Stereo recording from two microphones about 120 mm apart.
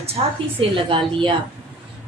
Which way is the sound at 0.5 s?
45° right (ahead or behind).